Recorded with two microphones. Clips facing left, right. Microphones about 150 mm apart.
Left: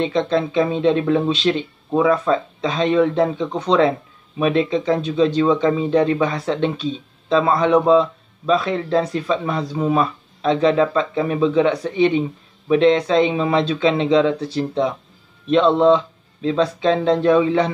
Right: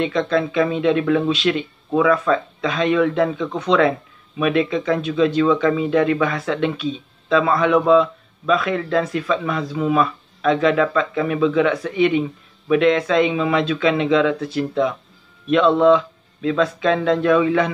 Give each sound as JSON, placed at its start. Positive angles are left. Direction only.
{"t": 0.0, "sound": "speech", "side_deg": 25}